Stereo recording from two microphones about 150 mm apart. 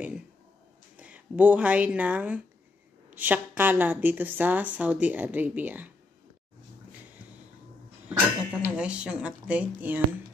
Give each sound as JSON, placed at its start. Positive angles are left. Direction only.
{"t": 0.9, "sound": "a woman's voice", "side_deg": -10}
{"t": 8.1, "sound": "a woman's voice", "side_deg": -10}